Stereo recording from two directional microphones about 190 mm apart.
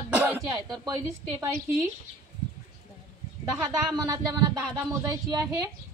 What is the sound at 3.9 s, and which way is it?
Speech, 20° right (ahead or behind).